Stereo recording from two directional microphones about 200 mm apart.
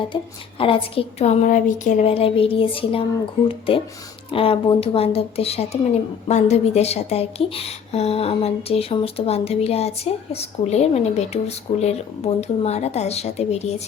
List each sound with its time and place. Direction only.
0.1 s a woman's voice: 25° left (ahead or behind)